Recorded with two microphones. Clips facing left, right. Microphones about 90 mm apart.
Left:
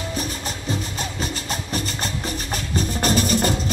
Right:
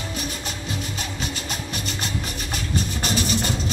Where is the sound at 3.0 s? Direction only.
45° left (ahead or behind).